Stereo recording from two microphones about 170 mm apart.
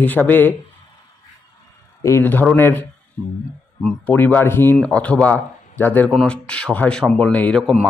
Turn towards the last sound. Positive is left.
turn(degrees=5)  # may be behind; listen again after turning